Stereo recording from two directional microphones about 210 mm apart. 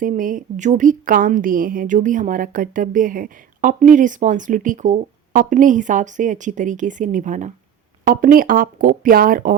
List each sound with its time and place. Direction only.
0.0 s a woman's voice: 40° right (ahead or behind)